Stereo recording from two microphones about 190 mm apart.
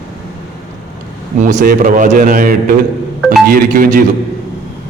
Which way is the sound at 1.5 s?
45° right (ahead or behind).